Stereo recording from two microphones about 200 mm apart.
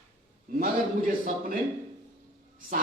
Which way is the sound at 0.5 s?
45° right (ahead or behind).